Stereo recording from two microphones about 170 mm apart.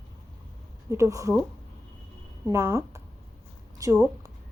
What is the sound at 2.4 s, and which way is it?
A woman's voice, 15° right (ahead or behind).